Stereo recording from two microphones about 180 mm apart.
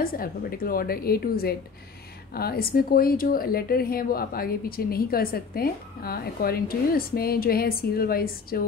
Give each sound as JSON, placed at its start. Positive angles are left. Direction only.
{"t": 0.0, "sound": "speech", "side_deg": 55}